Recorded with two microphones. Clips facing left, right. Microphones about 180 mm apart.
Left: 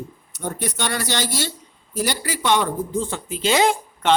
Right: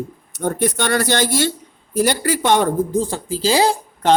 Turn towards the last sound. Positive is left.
turn(degrees=-30)  # may be behind; listen again after turning